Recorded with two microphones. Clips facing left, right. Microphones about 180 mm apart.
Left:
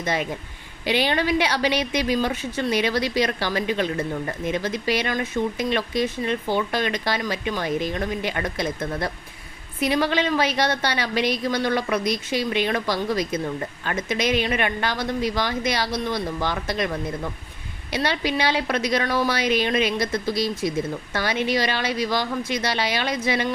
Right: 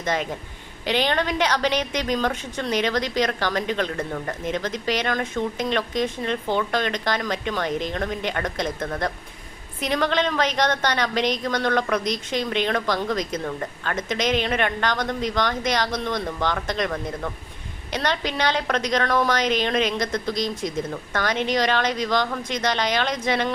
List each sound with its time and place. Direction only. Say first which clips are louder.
0.0 s a woman's voice: even; 10° left (ahead or behind)